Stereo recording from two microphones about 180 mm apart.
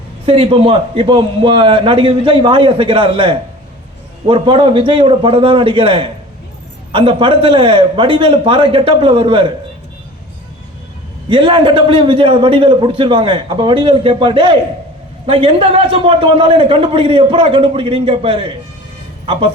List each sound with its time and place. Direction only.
0.3 s a man's voice: 30° right (ahead or behind)
11.3 s a man's voice: 30° right (ahead or behind)